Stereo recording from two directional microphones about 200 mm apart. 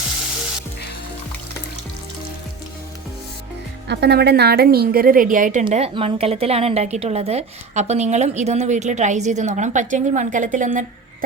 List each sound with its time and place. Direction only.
3.8 s a woman's voice: 55° right (ahead or behind)